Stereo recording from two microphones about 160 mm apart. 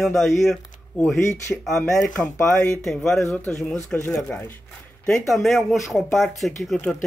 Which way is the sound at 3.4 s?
5° left (ahead or behind).